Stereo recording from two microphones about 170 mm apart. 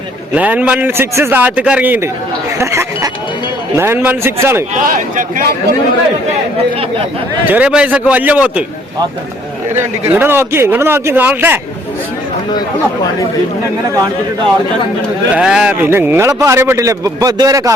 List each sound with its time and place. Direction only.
0.3 s a man's voice: 10° right (ahead or behind)
4.7 s a man's voice: 50° right (ahead or behind)
7.5 s a man's voice: 5° right (ahead or behind)
10.2 s a man's voice: 15° right (ahead or behind)
15.4 s a man's voice: 5° right (ahead or behind); by 17.7 s 20° right (ahead or behind)